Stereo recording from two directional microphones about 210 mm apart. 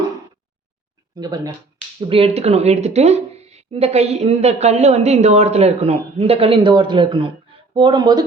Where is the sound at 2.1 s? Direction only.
30° right (ahead or behind).